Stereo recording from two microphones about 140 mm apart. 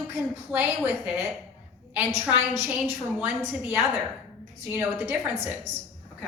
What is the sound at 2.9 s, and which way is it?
Speech, 15° right (ahead or behind).